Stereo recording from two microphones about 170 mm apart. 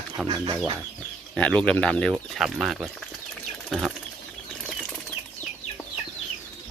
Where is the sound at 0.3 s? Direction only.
25° right (ahead or behind).